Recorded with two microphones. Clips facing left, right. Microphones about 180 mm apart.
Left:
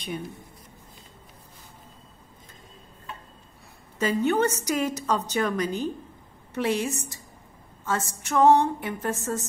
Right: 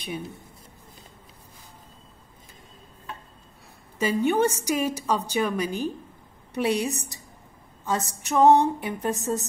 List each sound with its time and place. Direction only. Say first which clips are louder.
4.0 s a woman's voice: right 1 dB; 10° right (ahead or behind)